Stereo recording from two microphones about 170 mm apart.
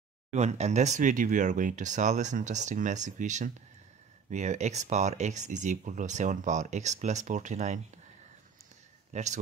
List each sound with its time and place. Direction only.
0.3 s speech: 40° right (ahead or behind)
9.1 s a man's voice: 45° right (ahead or behind)